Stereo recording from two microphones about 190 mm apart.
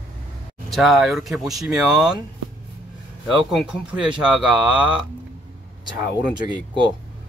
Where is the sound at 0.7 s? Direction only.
Centre (ahead or behind).